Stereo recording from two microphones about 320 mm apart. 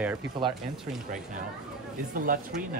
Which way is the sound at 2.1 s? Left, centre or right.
Right.